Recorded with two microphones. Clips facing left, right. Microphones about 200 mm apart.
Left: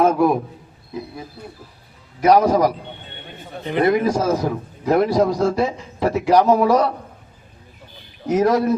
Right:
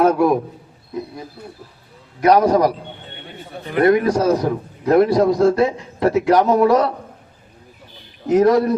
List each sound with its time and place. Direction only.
0.0 s a man's voice: centre (ahead or behind)
2.2 s a man's voice: centre (ahead or behind)
3.6 s speech: 20° left (ahead or behind)
4.0 s a man's voice: centre (ahead or behind)
8.3 s a man's voice: centre (ahead or behind)